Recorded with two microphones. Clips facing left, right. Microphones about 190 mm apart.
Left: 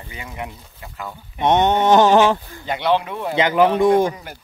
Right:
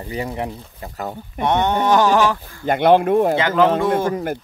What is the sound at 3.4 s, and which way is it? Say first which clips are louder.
Speech: left 1 dB; 15° left (ahead or behind).